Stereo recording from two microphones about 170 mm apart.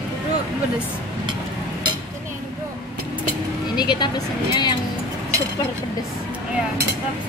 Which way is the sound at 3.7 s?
25° left (ahead or behind).